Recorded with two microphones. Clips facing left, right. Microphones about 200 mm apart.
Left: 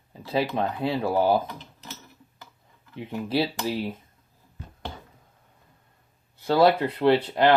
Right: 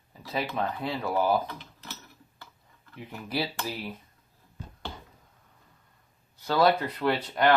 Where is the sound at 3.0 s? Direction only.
25° left (ahead or behind).